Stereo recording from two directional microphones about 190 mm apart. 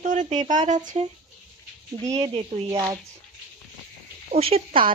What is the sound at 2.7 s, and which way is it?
Speech, 20° right (ahead or behind).